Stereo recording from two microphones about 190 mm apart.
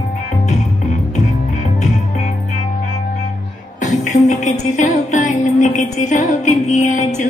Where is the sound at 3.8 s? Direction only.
40° left (ahead or behind).